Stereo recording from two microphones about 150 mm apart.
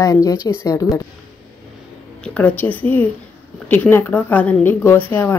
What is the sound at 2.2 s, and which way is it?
A woman's voice, 10° left (ahead or behind).